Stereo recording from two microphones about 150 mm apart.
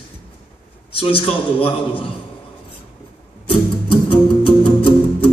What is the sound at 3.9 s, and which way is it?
Music, 35° left (ahead or behind).